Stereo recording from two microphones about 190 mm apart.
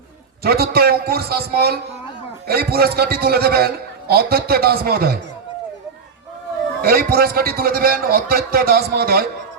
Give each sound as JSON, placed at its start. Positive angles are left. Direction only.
{"t": 0.4, "sound": "a man's voice", "side_deg": -55}
{"t": 6.8, "sound": "a man's voice", "side_deg": -55}